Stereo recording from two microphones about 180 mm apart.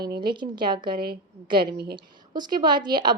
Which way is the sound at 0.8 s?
60° right (ahead or behind).